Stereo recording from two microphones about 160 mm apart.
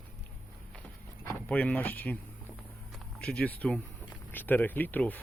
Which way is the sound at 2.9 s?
5° left (ahead or behind).